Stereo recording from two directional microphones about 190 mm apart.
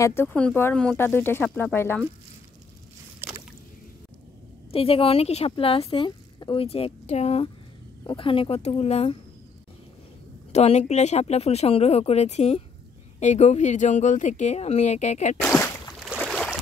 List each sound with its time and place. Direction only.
0.0 s speech: 10° left (ahead or behind)
3.2 s rowboat: 10° right (ahead or behind)
4.6 s speech: 30° left (ahead or behind)
10.5 s speech: 35° left (ahead or behind)
15.4 s speech: 5° left (ahead or behind)
16.0 s boat: 5° right (ahead or behind)